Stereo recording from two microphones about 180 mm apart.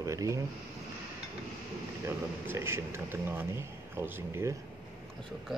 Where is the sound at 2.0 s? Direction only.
15° right (ahead or behind).